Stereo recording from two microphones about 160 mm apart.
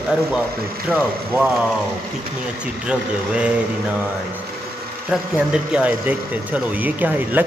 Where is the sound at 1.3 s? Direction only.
10° right (ahead or behind).